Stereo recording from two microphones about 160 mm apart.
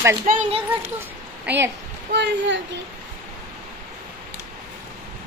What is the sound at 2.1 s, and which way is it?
Speech, 90° right.